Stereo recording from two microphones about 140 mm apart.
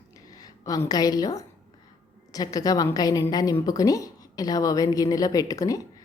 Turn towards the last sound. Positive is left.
turn(degrees=25)  # may be behind; listen again after turning